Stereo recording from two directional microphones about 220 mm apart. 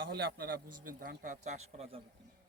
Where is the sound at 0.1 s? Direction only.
45° right (ahead or behind); by 2.0 s 30° right (ahead or behind).